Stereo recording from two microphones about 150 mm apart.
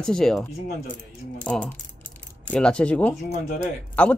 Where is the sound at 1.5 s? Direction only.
Centre (ahead or behind).